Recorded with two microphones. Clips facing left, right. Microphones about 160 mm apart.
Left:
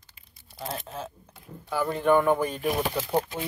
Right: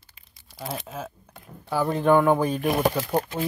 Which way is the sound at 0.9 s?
10° right (ahead or behind).